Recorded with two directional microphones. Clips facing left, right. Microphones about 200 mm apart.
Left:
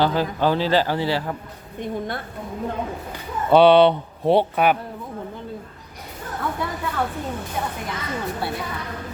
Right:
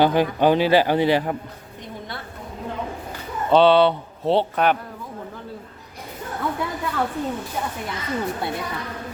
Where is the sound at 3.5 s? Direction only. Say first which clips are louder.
Left 2 dB; 15° left (ahead or behind).